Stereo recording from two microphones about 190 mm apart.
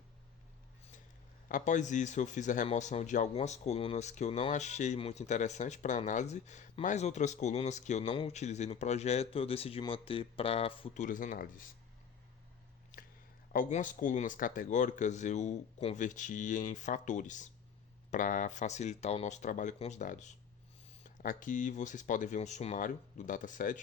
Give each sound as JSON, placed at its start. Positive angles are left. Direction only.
{"t": 1.5, "sound": "speech", "side_deg": 45}
{"t": 11.0, "sound": "speech", "side_deg": 45}
{"t": 13.5, "sound": "speech", "side_deg": 40}